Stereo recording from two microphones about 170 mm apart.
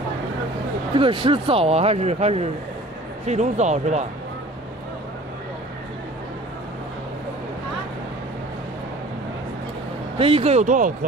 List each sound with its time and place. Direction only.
0.9 s a man's voice: 30° right (ahead or behind)
10.1 s a man's voice: 35° right (ahead or behind); by 11.1 s 50° right (ahead or behind)